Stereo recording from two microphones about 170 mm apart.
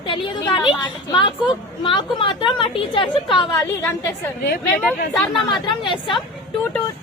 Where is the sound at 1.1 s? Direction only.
30° left (ahead or behind).